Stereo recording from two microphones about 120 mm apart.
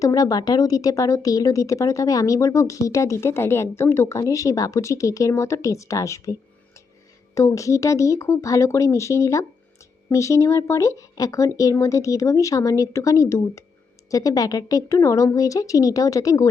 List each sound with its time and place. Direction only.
0.0 s speech: 30° left (ahead or behind)
7.3 s speech: 25° left (ahead or behind)